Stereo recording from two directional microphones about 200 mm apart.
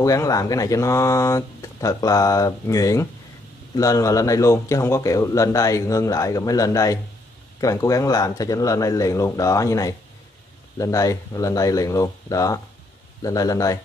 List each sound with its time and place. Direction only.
0.0 s speech: 15° left (ahead or behind)